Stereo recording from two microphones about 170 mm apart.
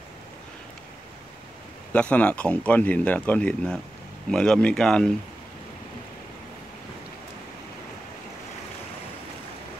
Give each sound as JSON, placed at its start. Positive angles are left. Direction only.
{"t": 1.9, "sound": "speech", "side_deg": 10}